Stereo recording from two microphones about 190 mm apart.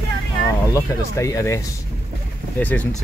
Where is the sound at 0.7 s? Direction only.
15° left (ahead or behind).